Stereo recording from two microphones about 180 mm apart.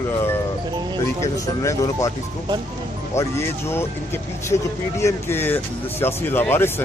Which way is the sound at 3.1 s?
15° left (ahead or behind).